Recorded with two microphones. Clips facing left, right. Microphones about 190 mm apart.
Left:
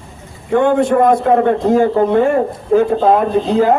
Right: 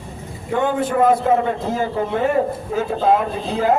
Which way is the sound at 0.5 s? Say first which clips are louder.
Left 7 dB; 55° left (ahead or behind).